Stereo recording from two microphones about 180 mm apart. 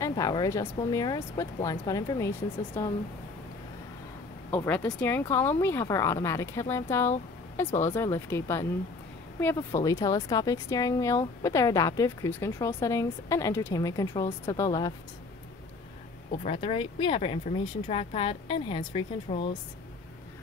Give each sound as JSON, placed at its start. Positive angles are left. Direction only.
{"t": 0.0, "sound": "speech", "side_deg": 20}
{"t": 4.6, "sound": "speech", "side_deg": 10}
{"t": 9.7, "sound": "speech", "side_deg": 20}
{"t": 16.4, "sound": "speech", "side_deg": 30}